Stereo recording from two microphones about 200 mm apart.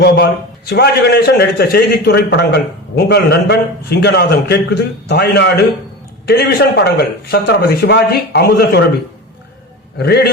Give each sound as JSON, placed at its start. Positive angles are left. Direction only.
{"t": 0.0, "sound": "a man's voice", "side_deg": 55}
{"t": 10.0, "sound": "speech", "side_deg": 55}